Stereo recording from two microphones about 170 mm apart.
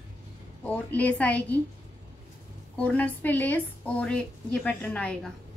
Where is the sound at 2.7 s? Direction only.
10° left (ahead or behind).